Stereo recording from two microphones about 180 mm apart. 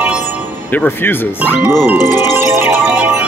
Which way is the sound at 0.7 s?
10° left (ahead or behind).